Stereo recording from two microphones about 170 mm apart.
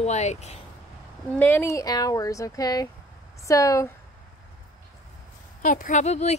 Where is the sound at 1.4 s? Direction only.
15° left (ahead or behind).